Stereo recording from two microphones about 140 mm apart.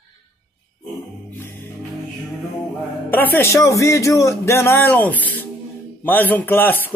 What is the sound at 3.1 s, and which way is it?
Speech, 15° left (ahead or behind).